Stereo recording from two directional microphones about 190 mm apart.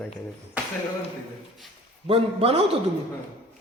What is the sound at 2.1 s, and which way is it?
Speech, 30° right (ahead or behind).